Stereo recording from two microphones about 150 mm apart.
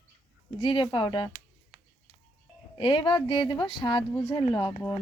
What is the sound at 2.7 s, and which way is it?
Speech, 35° left (ahead or behind).